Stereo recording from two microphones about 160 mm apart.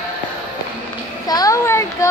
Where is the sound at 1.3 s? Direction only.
20° left (ahead or behind).